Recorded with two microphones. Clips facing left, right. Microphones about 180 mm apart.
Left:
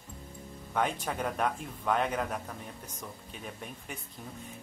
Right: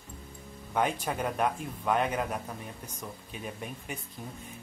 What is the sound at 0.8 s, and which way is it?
Speech, 5° right (ahead or behind).